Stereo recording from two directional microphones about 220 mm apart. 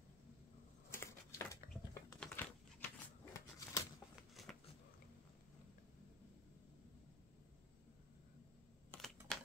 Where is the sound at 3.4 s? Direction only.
15° left (ahead or behind).